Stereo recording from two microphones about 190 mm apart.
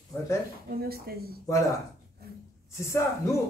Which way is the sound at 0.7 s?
55° right (ahead or behind).